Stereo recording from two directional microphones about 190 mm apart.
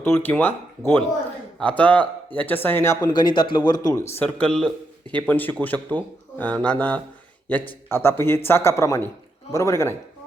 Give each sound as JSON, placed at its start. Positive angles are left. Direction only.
{"t": 0.0, "sound": "a man's voice", "side_deg": 10}